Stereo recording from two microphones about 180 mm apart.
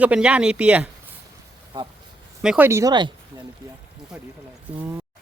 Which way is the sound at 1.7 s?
25° right (ahead or behind).